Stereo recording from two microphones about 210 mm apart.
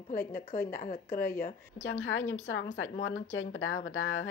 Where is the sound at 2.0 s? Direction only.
70° left (ahead or behind).